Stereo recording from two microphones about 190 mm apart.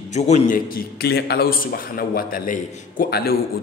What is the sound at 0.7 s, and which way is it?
A man's voice, 55° left (ahead or behind).